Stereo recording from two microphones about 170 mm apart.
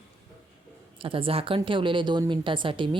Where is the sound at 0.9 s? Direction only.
30° right (ahead or behind).